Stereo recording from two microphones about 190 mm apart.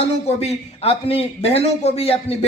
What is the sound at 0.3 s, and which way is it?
A man's voice, 35° left (ahead or behind).